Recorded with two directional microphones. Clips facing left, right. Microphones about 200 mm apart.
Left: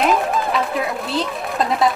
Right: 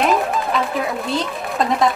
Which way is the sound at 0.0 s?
Centre (ahead or behind).